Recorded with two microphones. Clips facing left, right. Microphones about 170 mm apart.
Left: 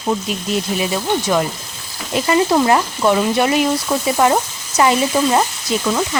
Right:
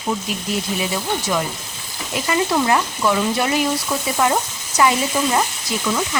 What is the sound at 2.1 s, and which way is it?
Speech, 25° left (ahead or behind).